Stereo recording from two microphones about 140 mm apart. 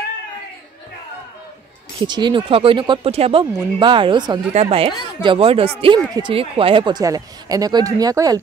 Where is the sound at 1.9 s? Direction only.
30° right (ahead or behind).